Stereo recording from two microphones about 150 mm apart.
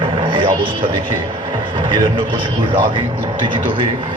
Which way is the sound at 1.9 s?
35° right (ahead or behind).